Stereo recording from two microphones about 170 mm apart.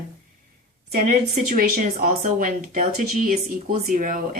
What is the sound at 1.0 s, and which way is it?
Speech, 55° right (ahead or behind).